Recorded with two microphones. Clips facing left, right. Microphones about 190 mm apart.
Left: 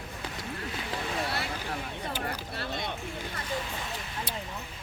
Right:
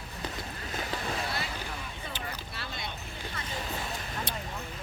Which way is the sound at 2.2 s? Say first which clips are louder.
Left 5 dB; 60° left (ahead or behind).